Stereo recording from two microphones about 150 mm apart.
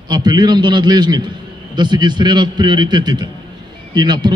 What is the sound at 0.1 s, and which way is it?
A man's voice, 25° right (ahead or behind).